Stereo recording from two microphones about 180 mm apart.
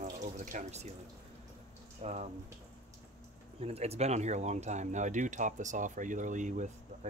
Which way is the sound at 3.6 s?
35° right (ahead or behind).